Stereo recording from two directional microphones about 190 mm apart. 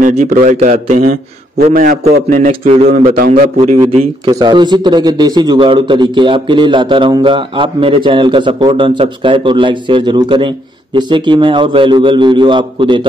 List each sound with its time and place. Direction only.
0.0 s a man's voice: 40° right (ahead or behind)
1.7 s a man's voice: 50° right (ahead or behind); by 2.9 s 30° right (ahead or behind)
3.2 s a man's voice: 45° right (ahead or behind)
4.3 s a man's voice: 20° right (ahead or behind)